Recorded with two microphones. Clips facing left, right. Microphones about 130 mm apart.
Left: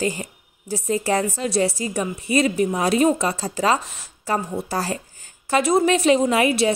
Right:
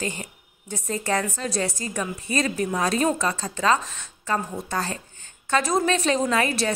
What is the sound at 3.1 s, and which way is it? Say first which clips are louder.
A woman's voice: left 3 dB; 30° left (ahead or behind).